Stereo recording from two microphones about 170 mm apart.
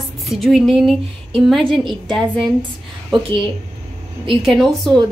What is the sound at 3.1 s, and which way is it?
Speech, 30° right (ahead or behind).